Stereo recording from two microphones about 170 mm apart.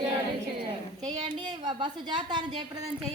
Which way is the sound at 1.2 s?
25° right (ahead or behind).